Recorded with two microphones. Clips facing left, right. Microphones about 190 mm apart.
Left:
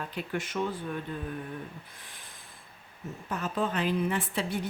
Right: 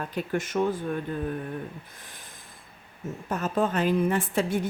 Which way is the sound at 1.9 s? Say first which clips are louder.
Right 3 dB; 45° right (ahead or behind).